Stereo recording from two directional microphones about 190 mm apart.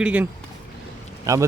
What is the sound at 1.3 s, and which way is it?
Speech, 15° right (ahead or behind).